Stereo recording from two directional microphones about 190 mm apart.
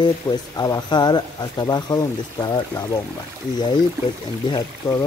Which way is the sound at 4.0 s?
15° right (ahead or behind).